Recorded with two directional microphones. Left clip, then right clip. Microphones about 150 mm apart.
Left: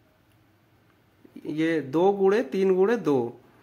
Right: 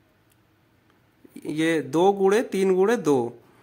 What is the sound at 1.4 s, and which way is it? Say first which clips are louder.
Speech: right 2 dB; 25° right (ahead or behind).